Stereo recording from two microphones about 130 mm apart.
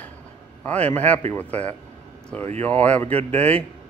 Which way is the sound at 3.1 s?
50° right (ahead or behind).